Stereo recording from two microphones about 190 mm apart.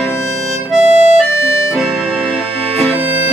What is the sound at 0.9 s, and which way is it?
Harmonica, 35° right (ahead or behind).